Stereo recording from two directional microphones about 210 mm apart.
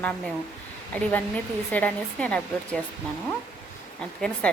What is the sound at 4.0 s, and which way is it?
Speech, 5° left (ahead or behind).